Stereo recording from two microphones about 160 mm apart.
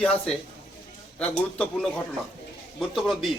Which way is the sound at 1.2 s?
5° left (ahead or behind).